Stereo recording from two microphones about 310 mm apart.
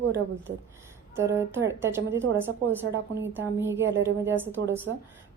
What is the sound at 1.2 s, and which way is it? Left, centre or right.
A woman's voice, centre.